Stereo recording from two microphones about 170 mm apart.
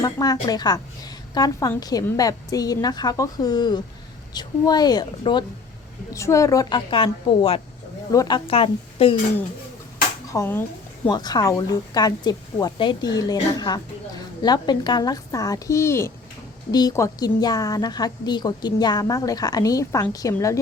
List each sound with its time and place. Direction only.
0.0 s a woman's voice: 20° left (ahead or behind)
8.1 s a woman's voice: 20° left (ahead or behind)
8.4 s a woman's voice: 35° left (ahead or behind)
10.2 s a sound: 15° left (ahead or behind)
11.1 s a woman's voice: 25° left (ahead or behind)